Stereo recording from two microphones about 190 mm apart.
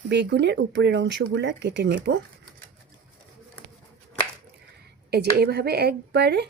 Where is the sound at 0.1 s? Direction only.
65° right (ahead or behind).